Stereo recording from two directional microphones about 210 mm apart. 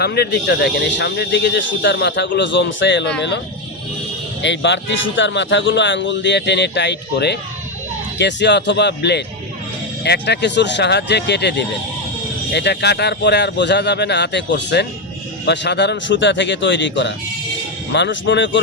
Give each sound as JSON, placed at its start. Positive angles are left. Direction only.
{"t": 0.0, "sound": "speech", "side_deg": 50}
{"t": 4.4, "sound": "speech", "side_deg": 60}